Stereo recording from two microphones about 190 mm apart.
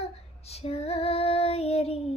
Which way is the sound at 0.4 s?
30° left (ahead or behind).